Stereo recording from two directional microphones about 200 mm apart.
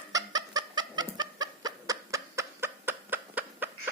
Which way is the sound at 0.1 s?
20° right (ahead or behind).